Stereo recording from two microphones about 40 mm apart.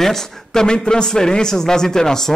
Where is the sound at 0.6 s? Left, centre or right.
Centre.